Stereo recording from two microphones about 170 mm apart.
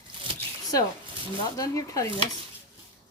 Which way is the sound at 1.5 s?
20° left (ahead or behind).